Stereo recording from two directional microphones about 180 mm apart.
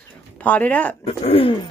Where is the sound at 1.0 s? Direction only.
30° left (ahead or behind).